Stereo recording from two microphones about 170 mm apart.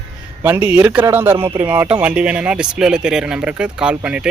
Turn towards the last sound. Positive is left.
turn(degrees=-5)  # may be behind; listen again after turning